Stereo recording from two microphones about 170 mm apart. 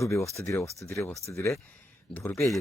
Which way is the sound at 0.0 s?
15° left (ahead or behind).